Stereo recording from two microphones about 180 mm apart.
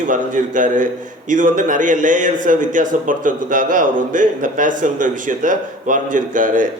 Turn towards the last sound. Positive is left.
turn(degrees=-50)  # may be behind; listen again after turning